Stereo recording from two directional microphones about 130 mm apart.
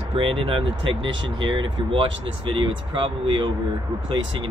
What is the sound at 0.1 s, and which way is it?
Speech, 45° right (ahead or behind).